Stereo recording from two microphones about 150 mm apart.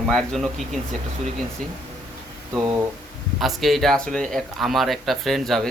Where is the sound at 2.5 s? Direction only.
20° right (ahead or behind).